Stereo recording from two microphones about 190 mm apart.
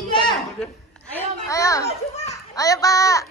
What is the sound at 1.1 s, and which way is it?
Children playing, 15° left (ahead or behind).